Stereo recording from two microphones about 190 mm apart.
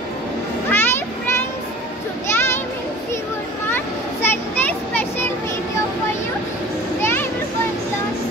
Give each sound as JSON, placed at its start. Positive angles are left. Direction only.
{"t": 0.7, "sound": "a sound", "side_deg": 10}
{"t": 2.3, "sound": "children playing", "side_deg": 10}
{"t": 3.7, "sound": "children playing", "side_deg": 10}
{"t": 7.0, "sound": "children playing", "side_deg": 10}